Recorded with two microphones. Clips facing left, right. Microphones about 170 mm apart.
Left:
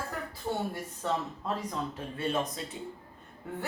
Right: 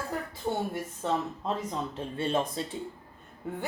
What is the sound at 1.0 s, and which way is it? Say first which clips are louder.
A woman's voice: right 2 dB; 20° right (ahead or behind).